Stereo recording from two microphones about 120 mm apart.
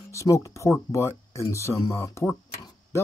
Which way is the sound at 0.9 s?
25° left (ahead or behind).